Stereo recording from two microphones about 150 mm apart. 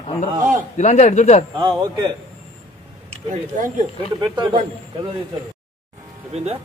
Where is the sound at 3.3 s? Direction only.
60° right (ahead or behind).